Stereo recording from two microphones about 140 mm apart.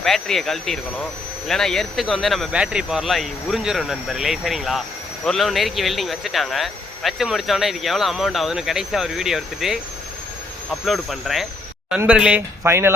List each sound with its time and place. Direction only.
0.0 s speech: centre (ahead or behind)
10.8 s speech: centre (ahead or behind)
12.6 s speech: 15° right (ahead or behind)